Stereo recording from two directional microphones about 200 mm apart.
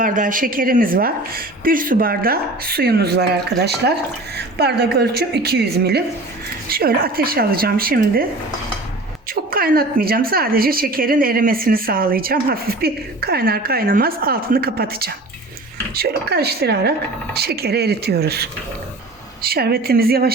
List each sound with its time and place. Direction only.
0.0 s a woman's voice: 40° right (ahead or behind)
9.3 s a woman's voice: 45° right (ahead or behind)